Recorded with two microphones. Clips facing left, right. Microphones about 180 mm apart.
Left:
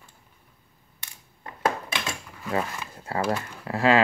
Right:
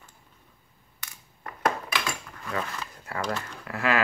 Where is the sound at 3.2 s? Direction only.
5° left (ahead or behind).